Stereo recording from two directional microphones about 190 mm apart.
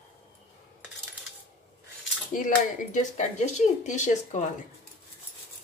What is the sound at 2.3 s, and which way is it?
Speech, 45° left (ahead or behind).